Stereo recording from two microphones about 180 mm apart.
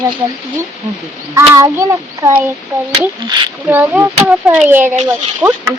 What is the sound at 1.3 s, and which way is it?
A child's voice, 15° right (ahead or behind).